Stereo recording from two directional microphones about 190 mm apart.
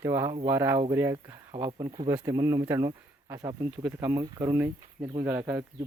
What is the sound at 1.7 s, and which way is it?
Speech, 25° right (ahead or behind).